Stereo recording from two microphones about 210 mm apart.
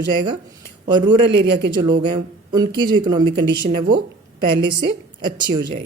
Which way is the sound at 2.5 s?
20° right (ahead or behind).